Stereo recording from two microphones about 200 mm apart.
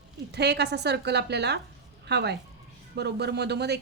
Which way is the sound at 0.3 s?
55° right (ahead or behind).